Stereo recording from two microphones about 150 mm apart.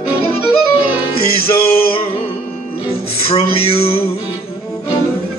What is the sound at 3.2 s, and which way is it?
Speech, 40° left (ahead or behind).